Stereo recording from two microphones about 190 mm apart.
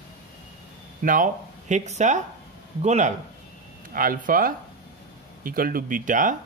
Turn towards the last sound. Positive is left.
turn(degrees=-45)  # may be behind; listen again after turning